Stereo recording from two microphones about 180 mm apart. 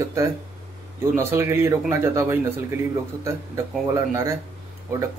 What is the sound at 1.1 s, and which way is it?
Speech, 15° right (ahead or behind).